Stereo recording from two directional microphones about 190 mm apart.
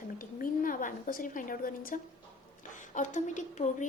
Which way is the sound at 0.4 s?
45° left (ahead or behind).